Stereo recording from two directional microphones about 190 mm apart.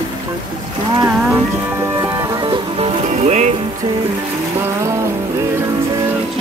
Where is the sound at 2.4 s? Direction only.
25° right (ahead or behind).